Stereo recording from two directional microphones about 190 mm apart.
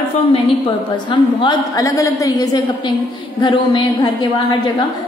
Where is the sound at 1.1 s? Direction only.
25° left (ahead or behind).